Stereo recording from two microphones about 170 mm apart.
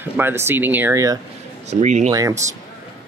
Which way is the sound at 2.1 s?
20° right (ahead or behind).